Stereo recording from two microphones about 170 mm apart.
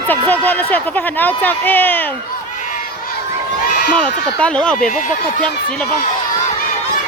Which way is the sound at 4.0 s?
5° left (ahead or behind).